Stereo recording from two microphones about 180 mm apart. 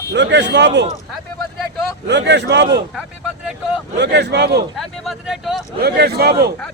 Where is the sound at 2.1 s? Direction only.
70° right (ahead or behind).